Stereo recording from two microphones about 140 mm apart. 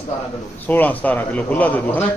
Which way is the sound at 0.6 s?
10° left (ahead or behind).